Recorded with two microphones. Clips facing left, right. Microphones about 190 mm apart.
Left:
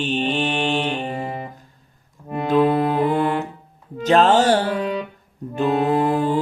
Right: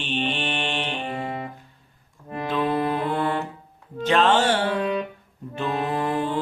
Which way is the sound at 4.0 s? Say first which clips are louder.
Left 4 dB; 40° left (ahead or behind).